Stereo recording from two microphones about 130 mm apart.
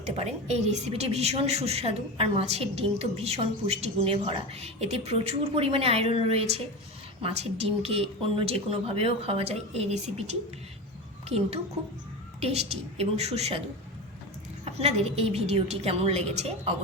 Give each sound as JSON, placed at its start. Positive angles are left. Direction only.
{"t": 0.0, "sound": "a woman's voice", "side_deg": -55}
{"t": 14.6, "sound": "a woman's voice", "side_deg": -55}